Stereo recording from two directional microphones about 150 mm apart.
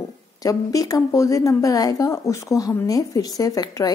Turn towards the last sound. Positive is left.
turn(degrees=25)  # may be behind; listen again after turning